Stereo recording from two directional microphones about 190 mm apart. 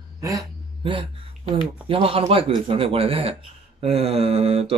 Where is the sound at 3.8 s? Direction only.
35° right (ahead or behind).